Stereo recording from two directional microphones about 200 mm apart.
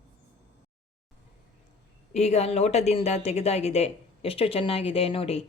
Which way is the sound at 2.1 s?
35° left (ahead or behind).